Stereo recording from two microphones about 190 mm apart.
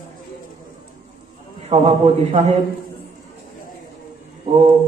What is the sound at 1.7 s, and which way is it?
Speech, 30° right (ahead or behind).